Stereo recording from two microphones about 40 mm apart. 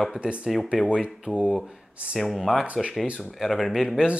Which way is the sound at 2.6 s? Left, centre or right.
Right.